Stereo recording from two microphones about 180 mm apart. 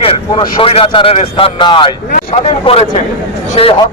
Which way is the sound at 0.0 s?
30° left (ahead or behind).